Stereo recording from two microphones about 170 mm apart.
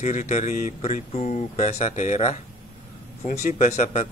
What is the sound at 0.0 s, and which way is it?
Speech, 45° left (ahead or behind).